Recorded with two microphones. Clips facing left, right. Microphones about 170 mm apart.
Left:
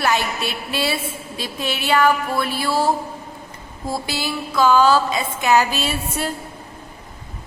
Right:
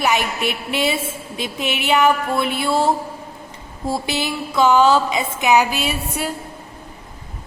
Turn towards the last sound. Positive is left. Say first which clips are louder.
# even
turn(degrees=-15)  # may be behind; listen again after turning